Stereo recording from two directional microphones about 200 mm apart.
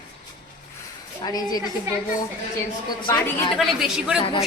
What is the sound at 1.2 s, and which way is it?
Speech, 20° left (ahead or behind).